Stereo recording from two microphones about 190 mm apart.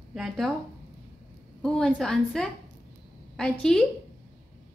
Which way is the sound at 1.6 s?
5° left (ahead or behind).